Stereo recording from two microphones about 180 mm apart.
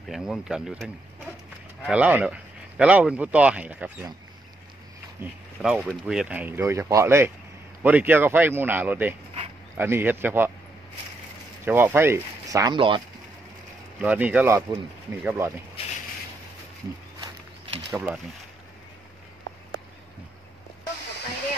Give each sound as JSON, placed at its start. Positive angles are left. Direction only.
{"t": 0.1, "sound": "speech", "side_deg": 0}
{"t": 5.2, "sound": "speech", "side_deg": -5}
{"t": 11.6, "sound": "speech", "side_deg": -10}
{"t": 13.9, "sound": "speech", "side_deg": -5}
{"t": 17.9, "sound": "speech", "side_deg": -5}